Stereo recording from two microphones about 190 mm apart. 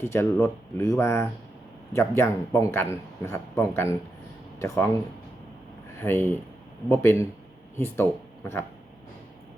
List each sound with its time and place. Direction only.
0.0 s a man's voice: 15° left (ahead or behind)
6.0 s a man's voice: 10° left (ahead or behind)